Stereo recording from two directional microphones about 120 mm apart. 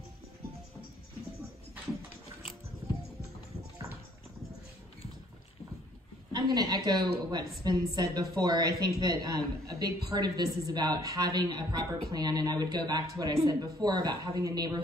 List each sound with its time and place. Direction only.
6.3 s a woman's voice: 35° right (ahead or behind)